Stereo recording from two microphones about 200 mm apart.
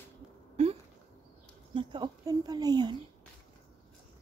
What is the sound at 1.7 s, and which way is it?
A woman's voice, 20° right (ahead or behind).